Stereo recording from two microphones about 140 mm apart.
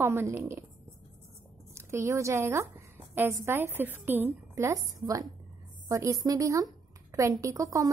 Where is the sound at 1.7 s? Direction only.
20° right (ahead or behind).